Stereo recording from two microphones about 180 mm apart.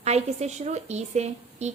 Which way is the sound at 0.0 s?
35° right (ahead or behind).